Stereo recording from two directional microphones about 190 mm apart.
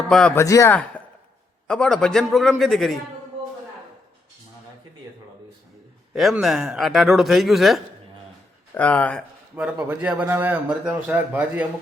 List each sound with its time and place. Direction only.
0.1 s speech: 5° left (ahead or behind)
0.4 s speech: 15° left (ahead or behind)
6.1 s speech: centre (ahead or behind)
9.6 s a man's voice: 5° right (ahead or behind)